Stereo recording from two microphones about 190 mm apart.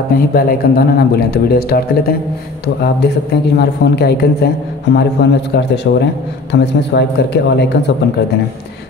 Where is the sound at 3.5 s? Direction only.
60° left (ahead or behind).